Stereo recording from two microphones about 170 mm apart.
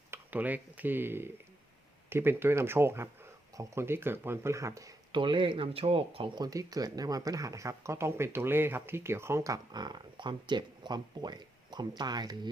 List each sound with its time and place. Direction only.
0.1 s speech: 10° right (ahead or behind)